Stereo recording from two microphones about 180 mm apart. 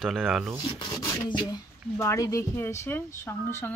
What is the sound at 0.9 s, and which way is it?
Filing, 20° left (ahead or behind).